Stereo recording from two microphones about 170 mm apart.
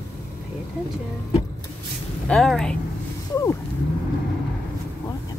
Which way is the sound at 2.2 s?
5° left (ahead or behind).